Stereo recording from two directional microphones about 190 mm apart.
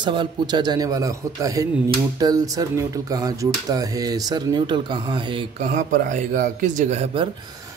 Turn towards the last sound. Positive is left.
turn(degrees=-35)  # may be behind; listen again after turning